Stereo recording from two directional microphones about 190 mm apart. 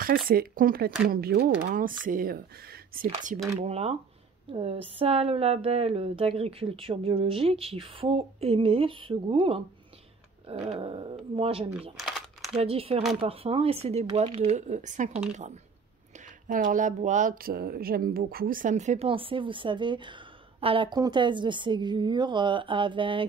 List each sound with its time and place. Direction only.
0.3 s speech: 50° right (ahead or behind); by 11.7 s 30° right (ahead or behind)
12.0 s a sound: centre (ahead or behind)
12.5 s speech: 30° right (ahead or behind)